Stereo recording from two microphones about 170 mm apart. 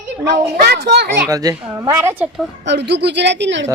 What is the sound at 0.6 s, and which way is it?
Speech, 70° right (ahead or behind).